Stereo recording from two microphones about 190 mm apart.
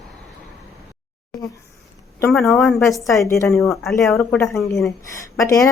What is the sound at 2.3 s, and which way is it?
Speech, centre (ahead or behind).